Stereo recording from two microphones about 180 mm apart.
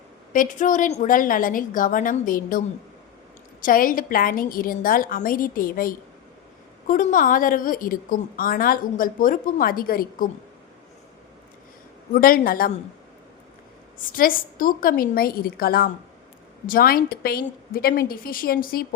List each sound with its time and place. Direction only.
0.3 s a woman's voice: 45° left (ahead or behind)
12.1 s a woman's voice: 50° left (ahead or behind)
14.0 s a woman's voice: 50° left (ahead or behind)